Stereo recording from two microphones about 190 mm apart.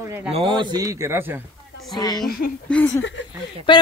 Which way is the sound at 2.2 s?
50° left (ahead or behind).